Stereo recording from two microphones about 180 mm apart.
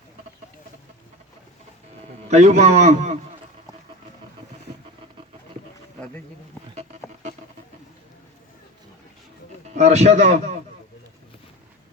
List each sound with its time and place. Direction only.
2.3 s a man's voice: 40° right (ahead or behind)
9.7 s a man's voice: 40° right (ahead or behind)